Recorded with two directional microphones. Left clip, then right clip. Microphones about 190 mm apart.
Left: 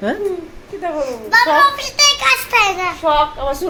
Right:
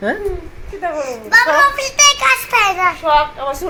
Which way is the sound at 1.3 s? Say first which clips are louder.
Right 1 dB; 25° right (ahead or behind).